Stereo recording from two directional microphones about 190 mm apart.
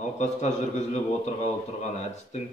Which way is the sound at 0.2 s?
35° left (ahead or behind).